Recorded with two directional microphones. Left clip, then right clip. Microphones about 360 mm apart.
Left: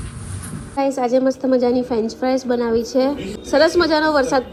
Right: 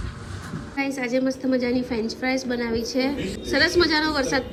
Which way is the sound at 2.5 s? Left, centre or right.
Centre.